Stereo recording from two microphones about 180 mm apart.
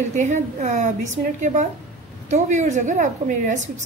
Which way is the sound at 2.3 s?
40° right (ahead or behind).